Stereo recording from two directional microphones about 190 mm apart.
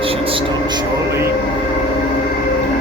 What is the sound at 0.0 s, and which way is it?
Music, 30° right (ahead or behind).